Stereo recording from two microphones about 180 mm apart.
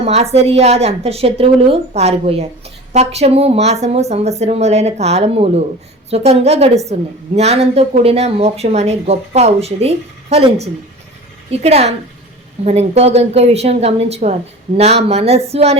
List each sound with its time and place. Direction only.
0.0 s a woman's voice: 35° right (ahead or behind)